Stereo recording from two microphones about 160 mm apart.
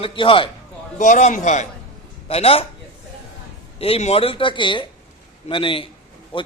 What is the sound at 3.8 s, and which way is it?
Speech, 40° left (ahead or behind).